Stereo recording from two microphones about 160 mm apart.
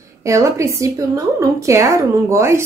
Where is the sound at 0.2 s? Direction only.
20° right (ahead or behind).